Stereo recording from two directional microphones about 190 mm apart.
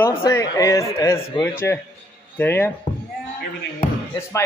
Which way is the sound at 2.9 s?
35° left (ahead or behind).